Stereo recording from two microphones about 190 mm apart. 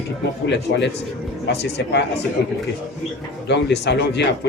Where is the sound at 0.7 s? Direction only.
60° left (ahead or behind).